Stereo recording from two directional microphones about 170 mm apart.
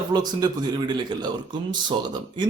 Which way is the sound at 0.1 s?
25° right (ahead or behind).